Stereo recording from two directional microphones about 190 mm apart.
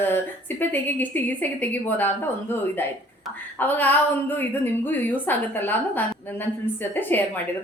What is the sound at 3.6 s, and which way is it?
A woman's voice, 10° left (ahead or behind).